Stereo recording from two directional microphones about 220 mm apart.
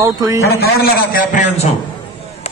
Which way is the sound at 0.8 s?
40° left (ahead or behind).